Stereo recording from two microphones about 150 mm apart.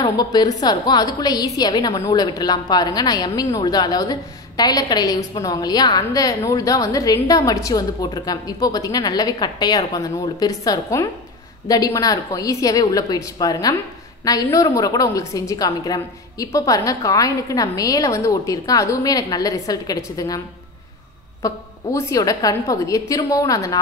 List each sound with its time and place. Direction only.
0.0 s a woman's voice: 25° left (ahead or behind)